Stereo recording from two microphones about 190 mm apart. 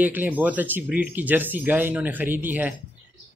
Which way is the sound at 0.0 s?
10° right (ahead or behind).